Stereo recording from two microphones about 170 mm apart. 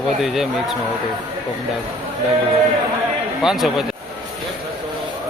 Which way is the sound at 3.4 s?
Centre (ahead or behind).